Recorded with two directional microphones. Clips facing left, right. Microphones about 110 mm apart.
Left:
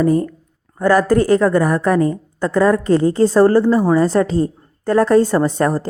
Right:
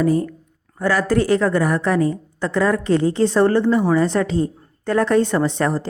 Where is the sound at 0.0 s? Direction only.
40° left (ahead or behind).